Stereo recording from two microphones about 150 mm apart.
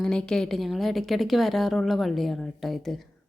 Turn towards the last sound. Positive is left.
turn(degrees=0)  # may be behind; listen again after turning